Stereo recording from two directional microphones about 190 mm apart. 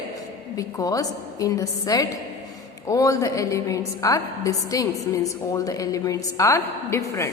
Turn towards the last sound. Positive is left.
turn(degrees=15)  # may be behind; listen again after turning